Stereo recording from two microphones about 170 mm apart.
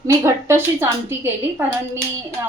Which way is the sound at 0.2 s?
15° right (ahead or behind).